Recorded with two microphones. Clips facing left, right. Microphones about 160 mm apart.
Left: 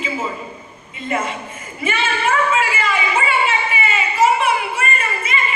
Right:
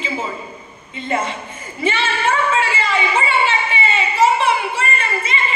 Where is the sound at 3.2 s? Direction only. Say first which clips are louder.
Right 1 dB; 30° right (ahead or behind).